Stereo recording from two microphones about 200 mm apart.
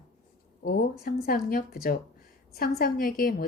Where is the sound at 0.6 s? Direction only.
45° left (ahead or behind).